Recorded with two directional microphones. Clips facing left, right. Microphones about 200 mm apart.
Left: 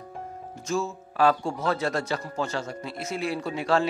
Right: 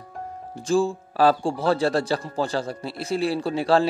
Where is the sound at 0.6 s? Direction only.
30° right (ahead or behind).